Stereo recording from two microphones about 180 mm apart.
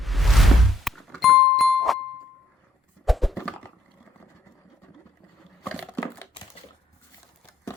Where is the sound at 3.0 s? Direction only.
Centre (ahead or behind).